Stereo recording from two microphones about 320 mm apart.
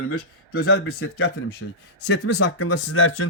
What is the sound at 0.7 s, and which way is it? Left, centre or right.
A man's voice, left.